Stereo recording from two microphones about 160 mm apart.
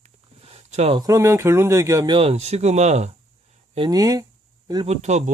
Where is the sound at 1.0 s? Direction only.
20° right (ahead or behind).